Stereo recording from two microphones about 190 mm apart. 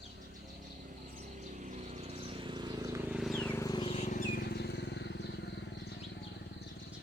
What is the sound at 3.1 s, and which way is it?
Vehicle, centre (ahead or behind).